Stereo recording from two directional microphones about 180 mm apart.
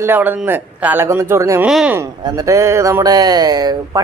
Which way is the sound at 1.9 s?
20° right (ahead or behind).